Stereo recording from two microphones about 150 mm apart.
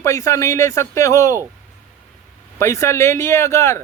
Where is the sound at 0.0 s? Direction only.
20° left (ahead or behind).